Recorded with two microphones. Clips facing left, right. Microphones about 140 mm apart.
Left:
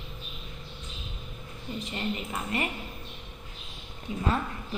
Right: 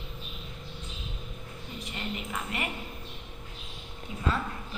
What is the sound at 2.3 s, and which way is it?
Speech, 30° left (ahead or behind).